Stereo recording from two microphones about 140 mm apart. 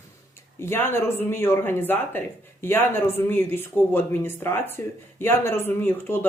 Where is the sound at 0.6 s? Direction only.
15° left (ahead or behind).